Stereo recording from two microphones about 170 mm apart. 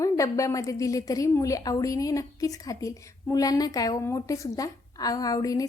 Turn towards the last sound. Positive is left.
turn(degrees=20)  # may be behind; listen again after turning